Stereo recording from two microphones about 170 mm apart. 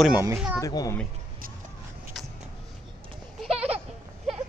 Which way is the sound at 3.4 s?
35° right (ahead or behind).